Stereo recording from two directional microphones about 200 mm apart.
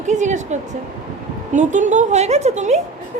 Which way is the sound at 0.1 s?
35° right (ahead or behind).